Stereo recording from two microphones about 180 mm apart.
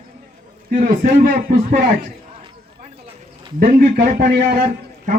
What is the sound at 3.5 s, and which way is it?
Speech, 50° right (ahead or behind).